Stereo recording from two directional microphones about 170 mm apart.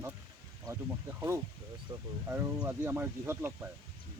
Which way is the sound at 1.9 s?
20° right (ahead or behind).